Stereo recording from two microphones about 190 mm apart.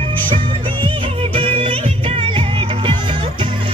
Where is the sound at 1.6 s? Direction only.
30° right (ahead or behind).